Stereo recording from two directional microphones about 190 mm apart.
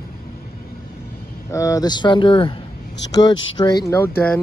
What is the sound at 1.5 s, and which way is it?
Speech, 15° left (ahead or behind).